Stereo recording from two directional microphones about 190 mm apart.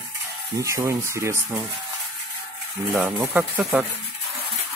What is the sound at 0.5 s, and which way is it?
Speech, 15° right (ahead or behind).